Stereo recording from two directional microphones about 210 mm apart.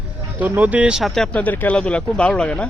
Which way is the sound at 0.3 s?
10° right (ahead or behind).